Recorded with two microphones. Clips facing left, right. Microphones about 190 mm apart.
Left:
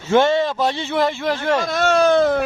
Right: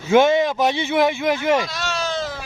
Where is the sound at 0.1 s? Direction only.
15° right (ahead or behind).